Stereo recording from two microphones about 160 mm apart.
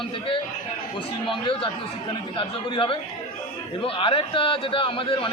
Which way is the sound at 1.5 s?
35° left (ahead or behind).